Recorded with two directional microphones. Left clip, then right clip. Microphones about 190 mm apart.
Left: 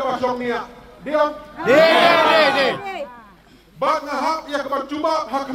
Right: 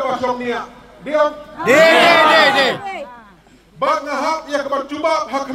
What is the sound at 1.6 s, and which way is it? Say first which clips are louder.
Speech: right 3 dB; 45° right (ahead or behind).